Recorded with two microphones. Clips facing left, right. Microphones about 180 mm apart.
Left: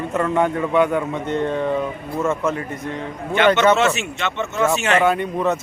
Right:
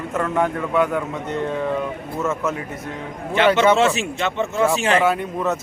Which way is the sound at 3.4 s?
30° right (ahead or behind).